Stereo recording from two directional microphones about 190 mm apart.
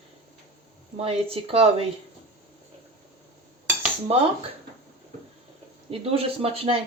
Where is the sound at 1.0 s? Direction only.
30° right (ahead or behind).